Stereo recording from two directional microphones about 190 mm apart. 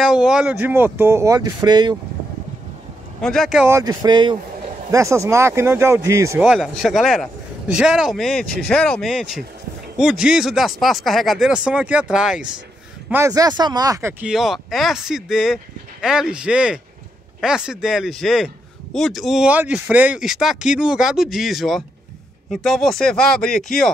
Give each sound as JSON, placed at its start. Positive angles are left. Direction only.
{"t": 0.0, "sound": "speech", "side_deg": -5}
{"t": 3.2, "sound": "speech", "side_deg": 0}
{"t": 3.7, "sound": "speech", "side_deg": -20}
{"t": 6.4, "sound": "speech", "side_deg": 0}
{"t": 13.1, "sound": "speech", "side_deg": -15}
{"t": 14.2, "sound": "speech", "side_deg": 0}